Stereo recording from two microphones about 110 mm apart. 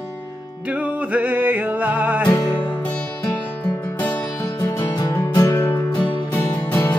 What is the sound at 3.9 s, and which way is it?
Music, 15° left (ahead or behind).